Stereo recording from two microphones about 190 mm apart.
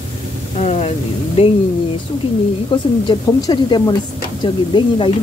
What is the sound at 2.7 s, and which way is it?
A woman's voice, 25° left (ahead or behind).